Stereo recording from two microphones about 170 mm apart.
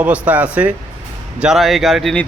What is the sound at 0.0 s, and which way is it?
Speech, 10° right (ahead or behind).